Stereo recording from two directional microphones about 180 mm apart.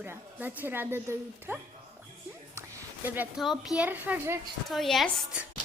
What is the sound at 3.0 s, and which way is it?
A child's voice, 5° right (ahead or behind).